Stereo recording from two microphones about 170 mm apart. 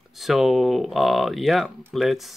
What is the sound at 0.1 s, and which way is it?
Speech, centre (ahead or behind).